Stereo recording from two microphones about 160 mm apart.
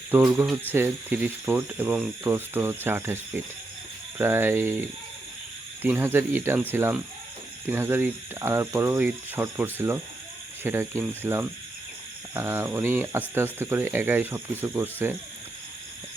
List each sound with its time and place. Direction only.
0.1 s speech: 15° right (ahead or behind)